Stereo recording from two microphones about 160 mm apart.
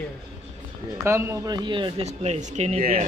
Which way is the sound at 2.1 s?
45° right (ahead or behind).